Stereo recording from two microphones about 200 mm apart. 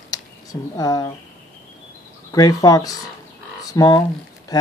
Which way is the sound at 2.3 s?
20° left (ahead or behind).